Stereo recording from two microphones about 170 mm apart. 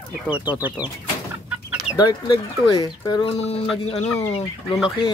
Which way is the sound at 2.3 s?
25° left (ahead or behind).